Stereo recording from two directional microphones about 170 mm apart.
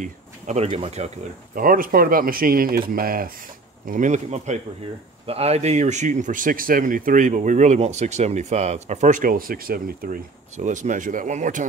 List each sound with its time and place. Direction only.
0.0 s speech: 40° right (ahead or behind)
1.5 s speech: 55° right (ahead or behind)